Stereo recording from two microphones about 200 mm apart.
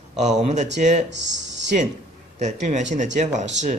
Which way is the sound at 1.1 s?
60° right (ahead or behind).